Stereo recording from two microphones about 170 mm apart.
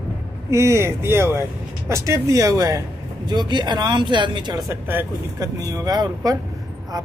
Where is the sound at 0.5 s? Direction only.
15° right (ahead or behind).